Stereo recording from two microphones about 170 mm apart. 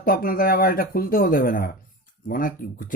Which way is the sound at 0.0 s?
55° left (ahead or behind).